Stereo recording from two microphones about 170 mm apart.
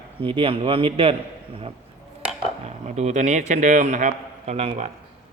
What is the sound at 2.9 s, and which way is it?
A man's voice, 45° right (ahead or behind).